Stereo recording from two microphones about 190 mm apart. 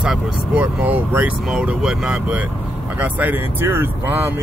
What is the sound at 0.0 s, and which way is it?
Speech, 5° right (ahead or behind).